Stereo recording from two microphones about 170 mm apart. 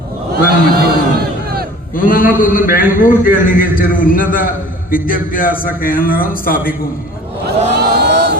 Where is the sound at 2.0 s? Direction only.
55° left (ahead or behind).